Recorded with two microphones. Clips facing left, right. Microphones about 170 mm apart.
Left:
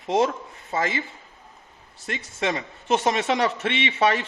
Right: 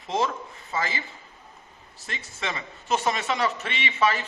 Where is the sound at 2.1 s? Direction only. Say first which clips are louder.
Left 7 dB; 50° left (ahead or behind).